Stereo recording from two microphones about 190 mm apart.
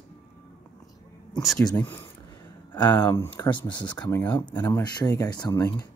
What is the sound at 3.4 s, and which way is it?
Speech, 25° left (ahead or behind).